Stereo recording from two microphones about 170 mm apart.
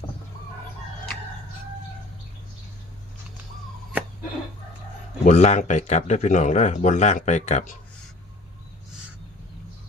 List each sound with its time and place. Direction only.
5.2 s speech: 40° left (ahead or behind)